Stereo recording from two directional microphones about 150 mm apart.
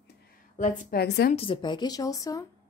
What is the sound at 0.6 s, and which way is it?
Speech, 70° left (ahead or behind).